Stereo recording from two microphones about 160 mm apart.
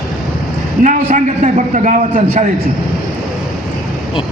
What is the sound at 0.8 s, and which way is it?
A man's voice, 50° right (ahead or behind).